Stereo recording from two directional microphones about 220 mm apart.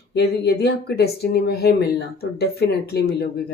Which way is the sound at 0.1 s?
45° left (ahead or behind).